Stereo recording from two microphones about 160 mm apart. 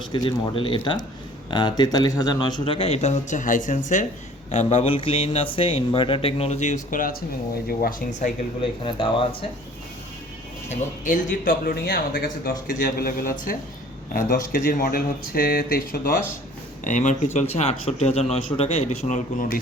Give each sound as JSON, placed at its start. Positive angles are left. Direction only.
{"t": 0.0, "sound": "speech", "side_deg": 30}
{"t": 4.5, "sound": "speech", "side_deg": 35}
{"t": 8.8, "sound": "speech", "side_deg": 35}
{"t": 10.7, "sound": "speech", "side_deg": 55}
{"t": 16.8, "sound": "a man's voice", "side_deg": 50}